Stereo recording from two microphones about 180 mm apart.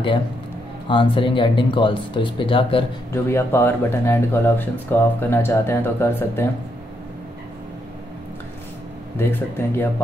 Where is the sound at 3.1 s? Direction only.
15° left (ahead or behind).